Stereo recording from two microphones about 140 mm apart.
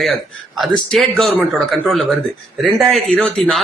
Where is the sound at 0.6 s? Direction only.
Centre (ahead or behind).